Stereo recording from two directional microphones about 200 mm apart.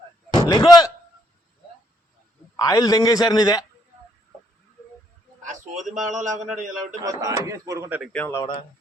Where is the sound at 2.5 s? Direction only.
20° left (ahead or behind).